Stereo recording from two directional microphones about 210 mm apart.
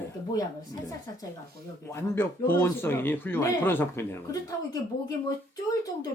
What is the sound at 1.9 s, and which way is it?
A man's voice, 10° left (ahead or behind).